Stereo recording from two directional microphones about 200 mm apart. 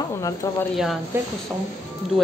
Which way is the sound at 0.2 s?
15° left (ahead or behind).